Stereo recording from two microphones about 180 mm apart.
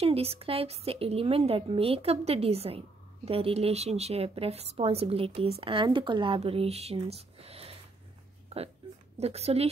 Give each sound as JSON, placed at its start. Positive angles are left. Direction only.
{"t": 0.0, "sound": "a woman's voice", "side_deg": -35}